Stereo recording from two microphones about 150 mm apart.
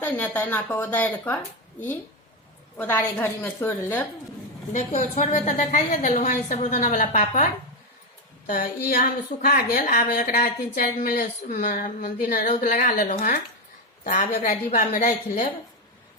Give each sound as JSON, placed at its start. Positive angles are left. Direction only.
{"t": 0.0, "sound": "speech", "side_deg": 15}
{"t": 2.7, "sound": "speech", "side_deg": 15}
{"t": 4.7, "sound": "a woman's voice", "side_deg": 55}
{"t": 8.4, "sound": "a woman's voice", "side_deg": 75}